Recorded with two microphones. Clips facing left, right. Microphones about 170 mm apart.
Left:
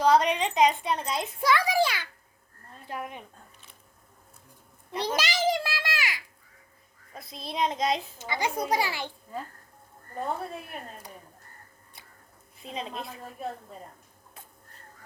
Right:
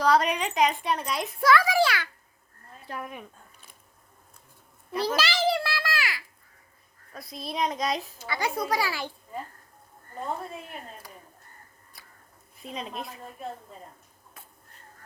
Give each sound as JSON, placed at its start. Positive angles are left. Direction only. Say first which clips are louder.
{"t": 0.0, "sound": "a woman's voice", "louder": "left 1 dB", "side_deg": 25}
{"t": 4.9, "sound": "a sound", "louder": "right 2 dB", "side_deg": 20}
{"t": 7.1, "sound": "a woman's voice", "louder": "right 2 dB", "side_deg": 25}
{"t": 12.6, "sound": "a woman's voice", "louder": "even", "side_deg": 25}